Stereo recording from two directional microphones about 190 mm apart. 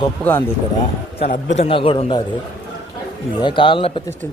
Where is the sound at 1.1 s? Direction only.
35° left (ahead or behind).